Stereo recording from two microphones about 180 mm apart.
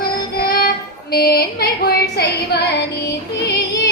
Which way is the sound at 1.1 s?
60° left (ahead or behind).